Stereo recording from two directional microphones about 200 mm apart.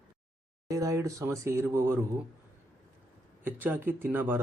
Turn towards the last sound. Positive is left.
turn(degrees=-10)  # may be behind; listen again after turning